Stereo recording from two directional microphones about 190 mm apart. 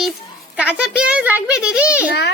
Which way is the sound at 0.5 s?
5° right (ahead or behind).